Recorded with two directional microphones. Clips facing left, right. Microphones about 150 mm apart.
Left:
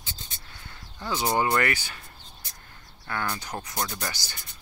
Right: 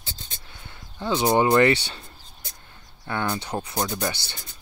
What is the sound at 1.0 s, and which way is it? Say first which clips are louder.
Speech: right 5 dB; 20° right (ahead or behind).